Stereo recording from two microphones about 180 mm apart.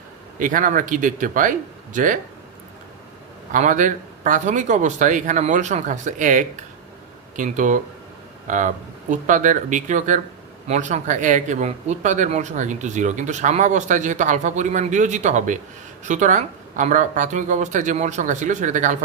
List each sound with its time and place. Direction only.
0.3 s speech: 45° right (ahead or behind)
3.5 s speech: 45° right (ahead or behind)